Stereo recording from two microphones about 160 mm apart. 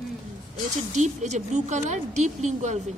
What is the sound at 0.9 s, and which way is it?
A woman's voice, 45° right (ahead or behind).